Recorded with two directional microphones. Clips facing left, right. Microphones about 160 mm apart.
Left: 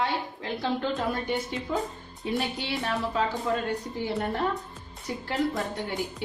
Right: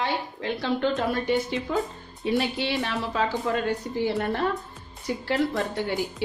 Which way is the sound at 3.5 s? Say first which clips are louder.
Right 1 dB; 75° right (ahead or behind).